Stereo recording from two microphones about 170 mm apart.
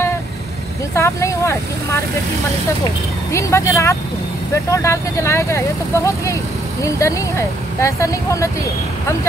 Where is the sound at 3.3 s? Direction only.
15° left (ahead or behind).